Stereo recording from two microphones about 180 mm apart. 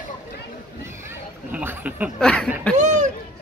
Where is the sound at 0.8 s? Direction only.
10° right (ahead or behind).